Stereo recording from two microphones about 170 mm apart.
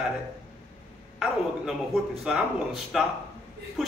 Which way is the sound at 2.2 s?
5° right (ahead or behind).